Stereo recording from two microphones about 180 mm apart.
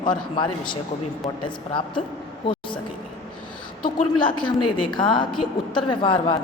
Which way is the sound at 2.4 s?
25° left (ahead or behind).